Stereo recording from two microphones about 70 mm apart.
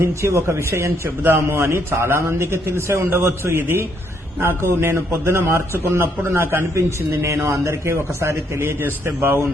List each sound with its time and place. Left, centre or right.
0.0 s a man's voice: right
6.7 s a man's voice: right